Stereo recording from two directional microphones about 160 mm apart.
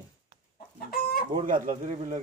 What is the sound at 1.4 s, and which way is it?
Speech, 55° right (ahead or behind).